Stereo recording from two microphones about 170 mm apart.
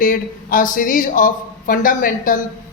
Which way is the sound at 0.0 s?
50° left (ahead or behind).